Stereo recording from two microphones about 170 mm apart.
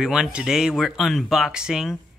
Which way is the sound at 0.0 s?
5° right (ahead or behind).